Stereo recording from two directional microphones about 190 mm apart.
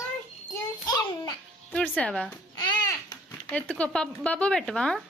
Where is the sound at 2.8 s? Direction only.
20° left (ahead or behind).